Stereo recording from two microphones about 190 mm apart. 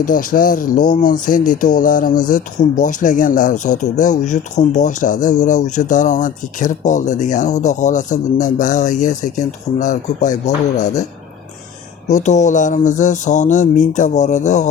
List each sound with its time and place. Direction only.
0.0 s speech: 45° left (ahead or behind)
12.0 s speech: 40° left (ahead or behind)